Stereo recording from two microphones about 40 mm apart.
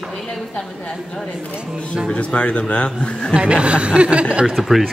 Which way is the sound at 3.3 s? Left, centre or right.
Right.